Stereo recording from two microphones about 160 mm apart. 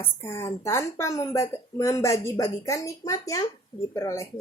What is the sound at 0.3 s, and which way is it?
Speech, 15° left (ahead or behind).